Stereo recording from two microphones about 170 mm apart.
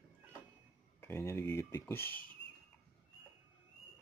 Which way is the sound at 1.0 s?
15° left (ahead or behind).